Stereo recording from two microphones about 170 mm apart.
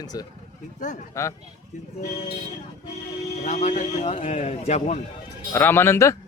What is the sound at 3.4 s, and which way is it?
Speech, 45° left (ahead or behind).